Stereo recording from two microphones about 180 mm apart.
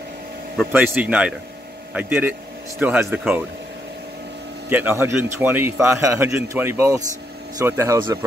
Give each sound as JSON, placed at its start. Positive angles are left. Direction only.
{"t": 0.7, "sound": "a man's voice", "side_deg": -5}
{"t": 4.6, "sound": "a man's voice", "side_deg": -10}